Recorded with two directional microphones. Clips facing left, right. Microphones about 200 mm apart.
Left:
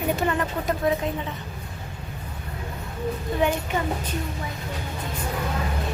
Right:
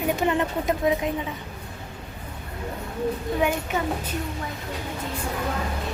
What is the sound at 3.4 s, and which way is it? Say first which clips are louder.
Speech: left 2 dB; 10° right (ahead or behind).